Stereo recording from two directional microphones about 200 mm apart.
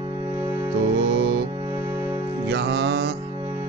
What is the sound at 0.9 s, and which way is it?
Music, 60° right (ahead or behind).